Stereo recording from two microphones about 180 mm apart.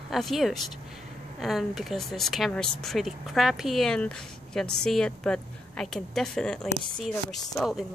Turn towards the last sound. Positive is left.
turn(degrees=0)  # may be behind; listen again after turning